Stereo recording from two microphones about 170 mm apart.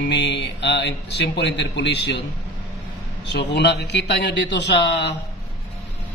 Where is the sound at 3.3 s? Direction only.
85° left.